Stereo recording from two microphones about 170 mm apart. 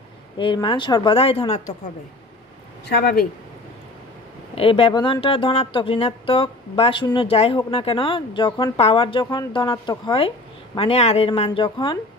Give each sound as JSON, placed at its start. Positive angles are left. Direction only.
{"t": 0.4, "sound": "speech", "side_deg": 30}
{"t": 2.9, "sound": "speech", "side_deg": 65}
{"t": 4.6, "sound": "speech", "side_deg": 35}